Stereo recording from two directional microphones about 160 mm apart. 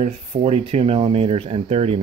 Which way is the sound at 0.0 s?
40° right (ahead or behind).